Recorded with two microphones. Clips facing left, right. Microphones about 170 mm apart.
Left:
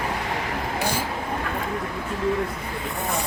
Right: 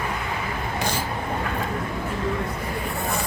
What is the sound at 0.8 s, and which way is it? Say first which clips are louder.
Vehicle: left 1 dB; 10° left (ahead or behind).